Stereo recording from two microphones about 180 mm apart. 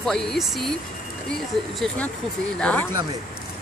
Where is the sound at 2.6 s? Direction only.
10° left (ahead or behind).